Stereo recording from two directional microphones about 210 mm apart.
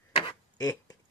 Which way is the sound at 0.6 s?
15° left (ahead or behind).